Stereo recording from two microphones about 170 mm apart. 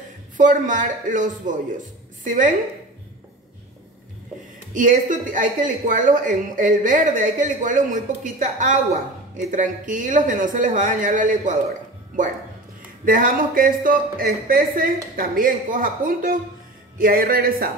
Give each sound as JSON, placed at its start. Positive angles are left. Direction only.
{"t": 0.4, "sound": "speech", "side_deg": -50}
{"t": 4.7, "sound": "speech", "side_deg": -50}
{"t": 13.0, "sound": "speech", "side_deg": -55}